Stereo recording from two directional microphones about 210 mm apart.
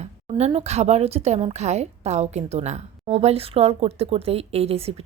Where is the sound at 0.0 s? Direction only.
30° right (ahead or behind).